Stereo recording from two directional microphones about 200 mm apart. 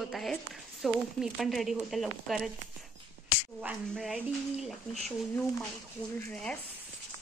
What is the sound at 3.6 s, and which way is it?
Speech, 5° right (ahead or behind).